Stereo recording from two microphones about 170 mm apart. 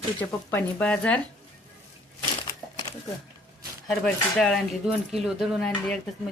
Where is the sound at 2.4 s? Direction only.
25° left (ahead or behind).